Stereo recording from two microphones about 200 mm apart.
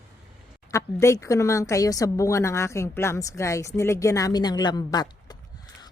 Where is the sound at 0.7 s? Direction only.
15° left (ahead or behind).